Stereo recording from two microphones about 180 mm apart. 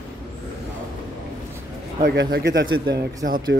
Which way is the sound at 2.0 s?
70° right (ahead or behind).